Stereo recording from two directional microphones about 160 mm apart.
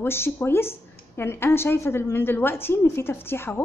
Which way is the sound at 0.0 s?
15° left (ahead or behind).